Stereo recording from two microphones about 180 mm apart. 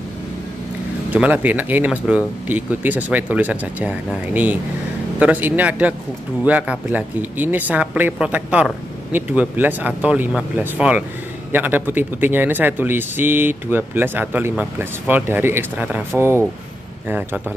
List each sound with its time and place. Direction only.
1.1 s speech: 10° right (ahead or behind)